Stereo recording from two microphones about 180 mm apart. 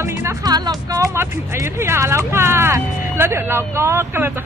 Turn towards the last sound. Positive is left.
turn(degrees=-10)  # may be behind; listen again after turning